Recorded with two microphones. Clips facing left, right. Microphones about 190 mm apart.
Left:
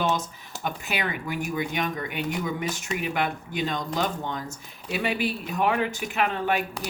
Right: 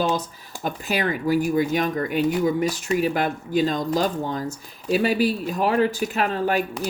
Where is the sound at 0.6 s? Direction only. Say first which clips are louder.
Right 5 dB; 35° right (ahead or behind).